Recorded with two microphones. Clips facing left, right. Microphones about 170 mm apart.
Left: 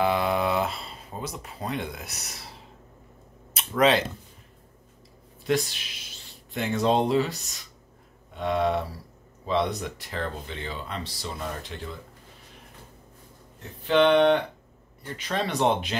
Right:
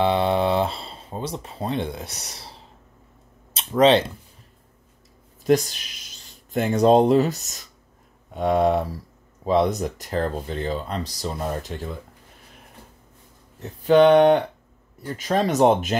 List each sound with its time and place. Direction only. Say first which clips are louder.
0.0 s speech: right 4 dB; 30° right (ahead or behind)
3.5 s a sound: right 5 dB; 30° right (ahead or behind)
5.4 s speech: right 6 dB; 45° right (ahead or behind)
13.8 s speech: right 5 dB; 45° right (ahead or behind)